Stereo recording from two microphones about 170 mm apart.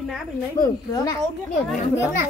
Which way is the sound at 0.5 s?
20° left (ahead or behind).